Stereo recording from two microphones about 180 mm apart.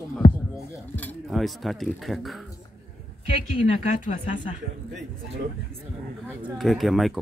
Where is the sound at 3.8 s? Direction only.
45° left (ahead or behind).